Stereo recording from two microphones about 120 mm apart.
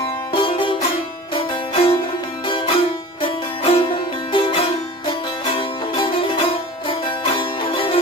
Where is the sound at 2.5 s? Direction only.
45° left (ahead or behind).